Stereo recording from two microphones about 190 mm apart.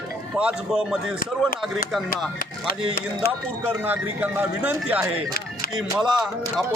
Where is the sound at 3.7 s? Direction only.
10° right (ahead or behind).